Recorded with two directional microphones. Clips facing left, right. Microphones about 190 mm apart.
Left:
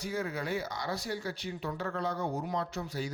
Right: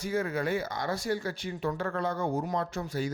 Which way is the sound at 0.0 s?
55° right (ahead or behind).